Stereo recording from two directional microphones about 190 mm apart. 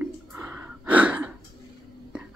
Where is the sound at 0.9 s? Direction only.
5° right (ahead or behind).